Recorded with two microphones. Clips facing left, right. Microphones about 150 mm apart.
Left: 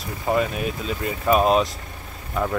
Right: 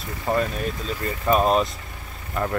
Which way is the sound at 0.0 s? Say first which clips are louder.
Left 1 dB; 5° left (ahead or behind).